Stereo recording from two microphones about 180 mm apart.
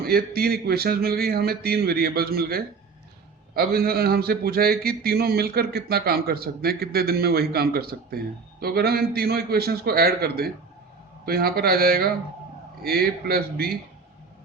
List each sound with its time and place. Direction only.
0.0 s speech: 55° right (ahead or behind)